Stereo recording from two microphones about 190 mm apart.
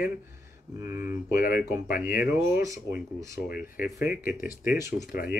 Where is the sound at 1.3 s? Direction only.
50° left (ahead or behind).